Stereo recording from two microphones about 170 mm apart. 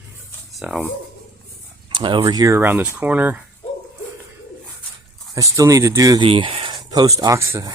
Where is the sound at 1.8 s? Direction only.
30° right (ahead or behind); by 3.4 s 10° right (ahead or behind).